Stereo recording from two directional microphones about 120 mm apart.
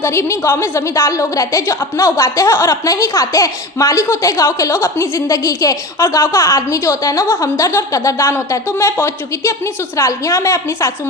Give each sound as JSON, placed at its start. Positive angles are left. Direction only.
{"t": 0.0, "sound": "a woman's voice", "side_deg": 25}